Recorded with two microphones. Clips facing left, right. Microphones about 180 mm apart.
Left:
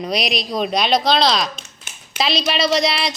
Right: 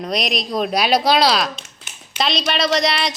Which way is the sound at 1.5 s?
45° left (ahead or behind).